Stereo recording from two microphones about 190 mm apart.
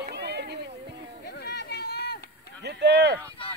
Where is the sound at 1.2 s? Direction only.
60° left (ahead or behind).